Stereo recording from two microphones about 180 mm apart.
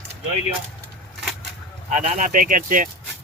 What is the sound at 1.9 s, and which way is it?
Speech, 45° right (ahead or behind).